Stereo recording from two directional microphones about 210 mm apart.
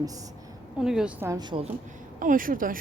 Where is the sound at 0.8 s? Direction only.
5° right (ahead or behind); by 1.6 s 20° right (ahead or behind).